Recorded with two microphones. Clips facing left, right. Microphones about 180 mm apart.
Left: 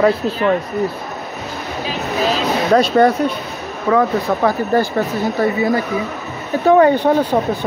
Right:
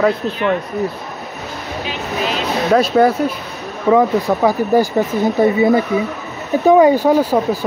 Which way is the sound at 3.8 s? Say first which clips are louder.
Right 2 dB; 15° right (ahead or behind).